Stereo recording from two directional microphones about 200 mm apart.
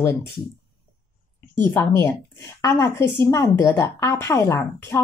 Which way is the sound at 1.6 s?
10° left (ahead or behind).